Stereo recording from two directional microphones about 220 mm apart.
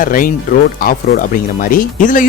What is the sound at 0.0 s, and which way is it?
Speech, 40° left (ahead or behind).